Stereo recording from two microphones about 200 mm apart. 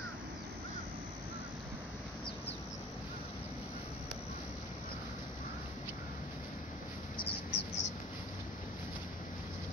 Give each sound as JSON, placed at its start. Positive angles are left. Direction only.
{"t": 7.2, "sound": "bird", "side_deg": 55}